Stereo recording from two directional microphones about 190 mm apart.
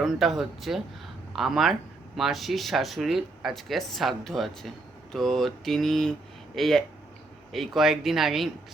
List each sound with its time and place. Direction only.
0.0 s speech: centre (ahead or behind)